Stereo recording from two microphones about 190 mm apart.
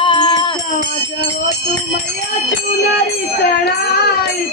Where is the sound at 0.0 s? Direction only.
25° left (ahead or behind).